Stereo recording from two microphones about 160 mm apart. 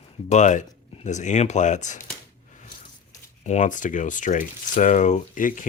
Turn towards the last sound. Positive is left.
turn(degrees=55)  # may be behind; listen again after turning